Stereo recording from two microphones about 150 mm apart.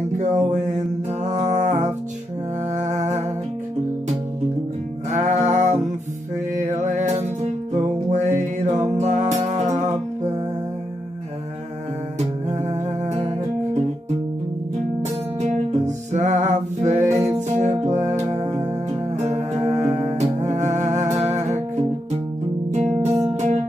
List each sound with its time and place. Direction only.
0.2 s a sound: 55° right (ahead or behind)
1.2 s music: 50° right (ahead or behind)
5.1 s music: 50° right (ahead or behind)
12.4 s music: 50° right (ahead or behind)
15.0 s music: 50° right (ahead or behind)
22.7 s music: 50° right (ahead or behind)